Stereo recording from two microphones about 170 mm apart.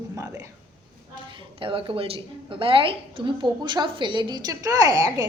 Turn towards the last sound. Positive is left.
turn(degrees=-20)  # may be behind; listen again after turning